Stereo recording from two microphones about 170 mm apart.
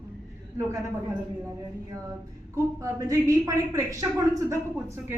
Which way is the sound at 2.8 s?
20° right (ahead or behind).